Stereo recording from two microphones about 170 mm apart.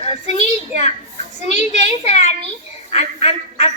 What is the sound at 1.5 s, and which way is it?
A woman's voice, 40° left (ahead or behind).